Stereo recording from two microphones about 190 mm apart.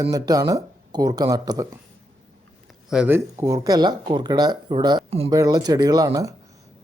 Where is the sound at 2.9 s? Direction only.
10° right (ahead or behind).